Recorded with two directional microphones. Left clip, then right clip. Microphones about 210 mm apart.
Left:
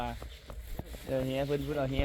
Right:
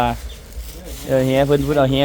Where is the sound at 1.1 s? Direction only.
5° right (ahead or behind).